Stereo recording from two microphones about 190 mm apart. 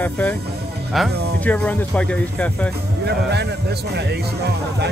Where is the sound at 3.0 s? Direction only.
60° right (ahead or behind).